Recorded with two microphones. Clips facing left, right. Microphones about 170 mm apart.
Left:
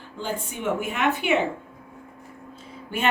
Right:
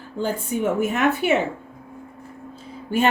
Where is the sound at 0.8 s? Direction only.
40° right (ahead or behind).